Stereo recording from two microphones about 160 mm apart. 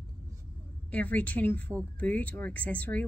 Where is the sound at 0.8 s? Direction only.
10° left (ahead or behind).